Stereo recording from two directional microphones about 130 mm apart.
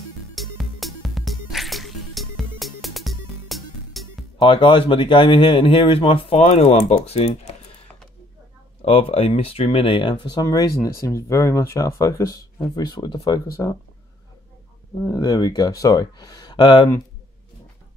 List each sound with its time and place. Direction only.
0.3 s music: centre (ahead or behind)
4.4 s speech: 40° left (ahead or behind); by 7.5 s 55° left (ahead or behind)
8.8 s speech: 50° left (ahead or behind)
10.4 s speech: 25° left (ahead or behind)
15.0 s speech: 25° left (ahead or behind)